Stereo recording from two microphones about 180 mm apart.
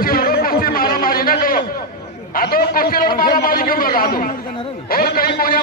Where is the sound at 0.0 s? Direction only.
55° left (ahead or behind).